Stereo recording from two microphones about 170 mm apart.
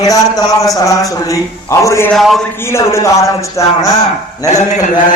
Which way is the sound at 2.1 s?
Centre (ahead or behind).